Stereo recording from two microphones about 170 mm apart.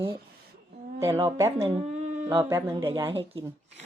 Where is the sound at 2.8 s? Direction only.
30° right (ahead or behind).